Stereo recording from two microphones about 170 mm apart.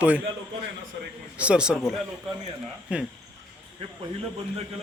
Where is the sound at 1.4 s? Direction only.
5° right (ahead or behind).